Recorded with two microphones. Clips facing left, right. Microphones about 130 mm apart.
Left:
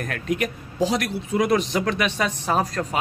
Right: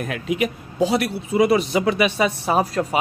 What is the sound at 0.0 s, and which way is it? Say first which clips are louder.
A man's voice: right 2 dB; 5° right (ahead or behind).